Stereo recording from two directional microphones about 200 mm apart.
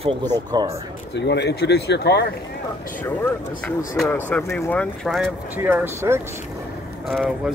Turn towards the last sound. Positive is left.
turn(degrees=0)  # may be behind; listen again after turning